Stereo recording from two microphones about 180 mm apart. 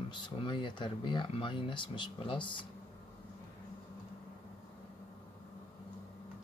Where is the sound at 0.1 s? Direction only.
25° left (ahead or behind).